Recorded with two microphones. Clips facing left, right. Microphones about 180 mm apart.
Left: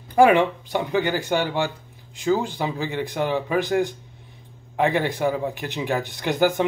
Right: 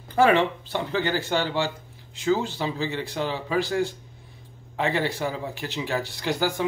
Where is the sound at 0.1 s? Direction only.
15° left (ahead or behind).